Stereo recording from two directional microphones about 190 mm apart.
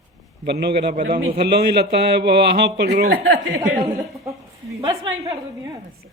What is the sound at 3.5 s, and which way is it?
A man's voice, 15° right (ahead or behind).